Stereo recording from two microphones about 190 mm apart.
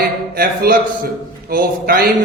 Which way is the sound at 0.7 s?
50° right (ahead or behind).